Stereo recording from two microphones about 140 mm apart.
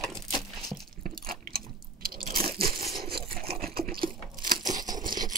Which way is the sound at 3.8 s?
90° right.